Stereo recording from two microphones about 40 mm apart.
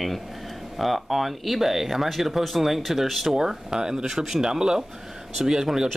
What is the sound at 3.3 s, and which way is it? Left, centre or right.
Speech, centre.